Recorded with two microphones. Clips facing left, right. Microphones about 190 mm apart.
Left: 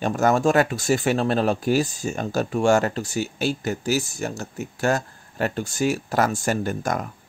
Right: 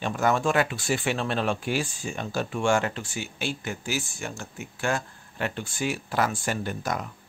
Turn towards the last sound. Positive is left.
turn(degrees=50)  # may be behind; listen again after turning